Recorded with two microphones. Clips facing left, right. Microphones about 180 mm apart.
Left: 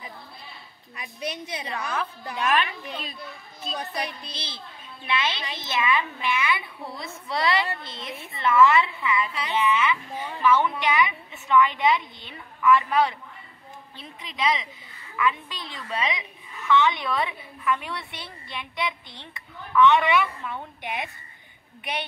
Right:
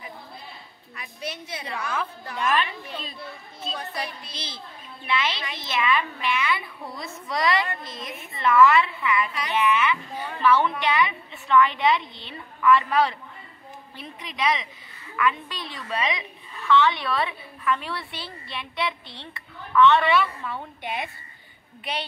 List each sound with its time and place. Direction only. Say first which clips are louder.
0.9 s a woman's voice: left 2 dB; 15° left (ahead or behind)
14.2 s a woman's voice: even; 20° left (ahead or behind)